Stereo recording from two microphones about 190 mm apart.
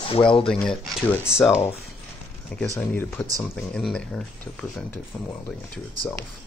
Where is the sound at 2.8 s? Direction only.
10° left (ahead or behind).